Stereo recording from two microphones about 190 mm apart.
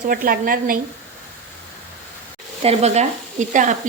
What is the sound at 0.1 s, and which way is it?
Speech, 50° right (ahead or behind).